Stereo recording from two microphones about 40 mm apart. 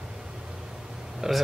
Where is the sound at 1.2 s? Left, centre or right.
Centre.